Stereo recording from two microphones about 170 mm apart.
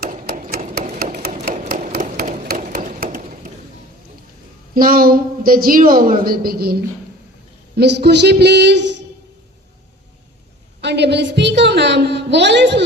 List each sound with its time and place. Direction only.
0.0 s hammer: 55° right (ahead or behind)
1.5 s a sound: 60° right (ahead or behind)
4.7 s a woman's voice: 55° right (ahead or behind)
7.8 s speech: 75° right (ahead or behind)
10.8 s a woman's voice: 90° right